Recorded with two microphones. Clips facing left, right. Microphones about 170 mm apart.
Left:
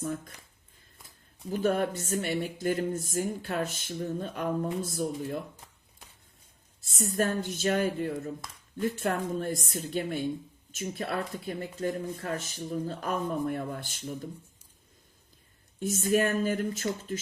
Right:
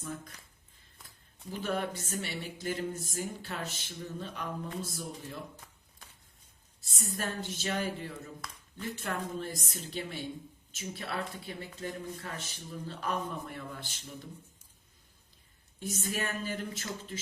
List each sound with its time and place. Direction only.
1.5 s speech: 50° left (ahead or behind)
6.9 s speech: 50° left (ahead or behind)
15.8 s speech: 50° left (ahead or behind)